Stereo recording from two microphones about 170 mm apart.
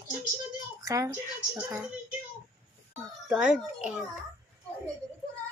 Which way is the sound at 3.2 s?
5° right (ahead or behind).